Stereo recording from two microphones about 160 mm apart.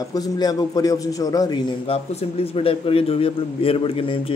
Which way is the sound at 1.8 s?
40° left (ahead or behind).